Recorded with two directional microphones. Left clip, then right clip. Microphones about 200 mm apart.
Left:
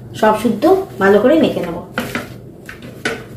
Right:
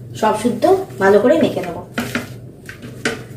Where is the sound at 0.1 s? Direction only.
20° left (ahead or behind).